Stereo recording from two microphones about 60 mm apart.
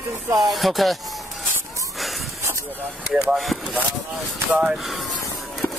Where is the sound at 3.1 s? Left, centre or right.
Centre.